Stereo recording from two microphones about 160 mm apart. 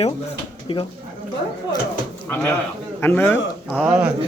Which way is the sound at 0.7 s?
35° left (ahead or behind).